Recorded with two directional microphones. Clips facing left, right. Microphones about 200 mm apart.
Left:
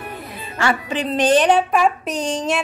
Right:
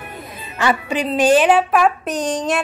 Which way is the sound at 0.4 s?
20° right (ahead or behind).